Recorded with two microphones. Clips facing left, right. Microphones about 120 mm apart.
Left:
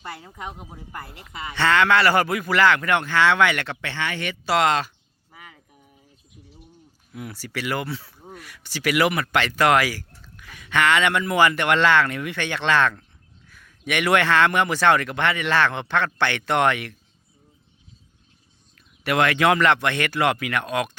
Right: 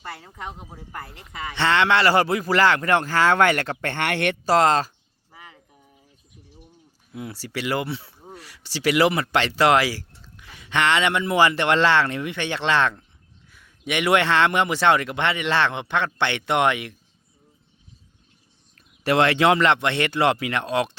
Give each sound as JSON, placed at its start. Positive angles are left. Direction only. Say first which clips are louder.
{"t": 0.3, "sound": "speech", "louder": "even", "side_deg": 15}
{"t": 1.5, "sound": "speech", "louder": "left 1 dB", "side_deg": -25}
{"t": 4.4, "sound": "speech", "louder": "right 2 dB", "side_deg": -40}
{"t": 5.3, "sound": "a sound", "louder": "even", "side_deg": -25}
{"t": 7.1, "sound": "speech", "louder": "right 1 dB", "side_deg": -25}
{"t": 19.0, "sound": "speech", "louder": "right 1 dB", "side_deg": -30}